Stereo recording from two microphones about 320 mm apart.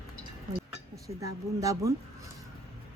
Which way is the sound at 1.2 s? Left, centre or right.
Centre.